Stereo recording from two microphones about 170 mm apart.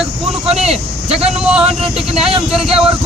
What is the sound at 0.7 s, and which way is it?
Speech, 35° right (ahead or behind).